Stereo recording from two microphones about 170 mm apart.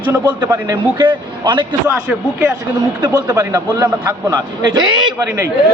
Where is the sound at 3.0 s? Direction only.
20° right (ahead or behind).